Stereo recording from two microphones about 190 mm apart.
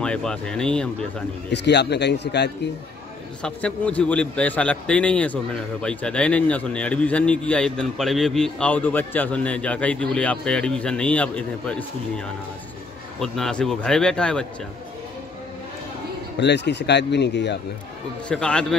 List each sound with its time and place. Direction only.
0.0 s a man's voice: 5° left (ahead or behind)
1.5 s speech: 65° left (ahead or behind)
3.4 s a man's voice: 5° left (ahead or behind)
13.2 s a man's voice: 5° left (ahead or behind)
16.3 s speech: 65° left (ahead or behind)
18.3 s a man's voice: 5° left (ahead or behind)